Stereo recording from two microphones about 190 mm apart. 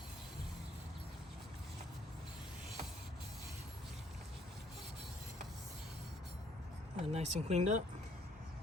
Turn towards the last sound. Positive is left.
turn(degrees=-35)  # may be behind; listen again after turning